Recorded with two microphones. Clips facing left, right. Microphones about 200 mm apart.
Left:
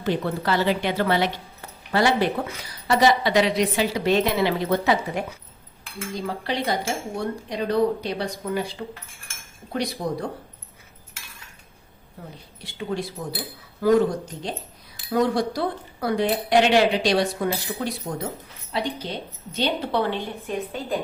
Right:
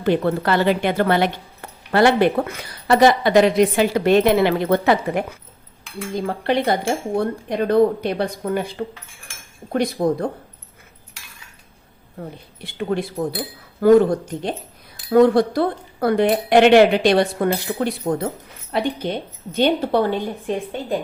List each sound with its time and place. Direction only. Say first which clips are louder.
0.0 s a woman's voice: right 6 dB; 55° right (ahead or behind)
12.2 s a woman's voice: right 7 dB; 55° right (ahead or behind)
15.1 s a woman's voice: right 8 dB; 55° right (ahead or behind)